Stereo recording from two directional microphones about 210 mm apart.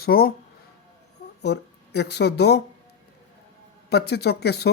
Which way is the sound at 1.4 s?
50° left (ahead or behind).